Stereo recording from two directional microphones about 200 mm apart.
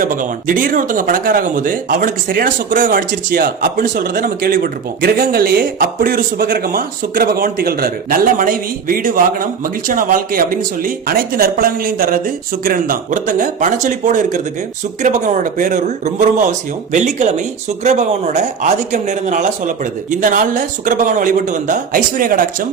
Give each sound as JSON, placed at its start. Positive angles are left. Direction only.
{"t": 0.0, "sound": "speech", "side_deg": -45}